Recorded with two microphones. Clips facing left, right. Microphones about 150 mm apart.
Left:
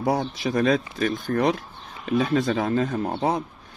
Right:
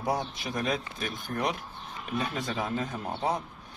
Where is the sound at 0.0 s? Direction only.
85° left; by 3.4 s 70° left (ahead or behind).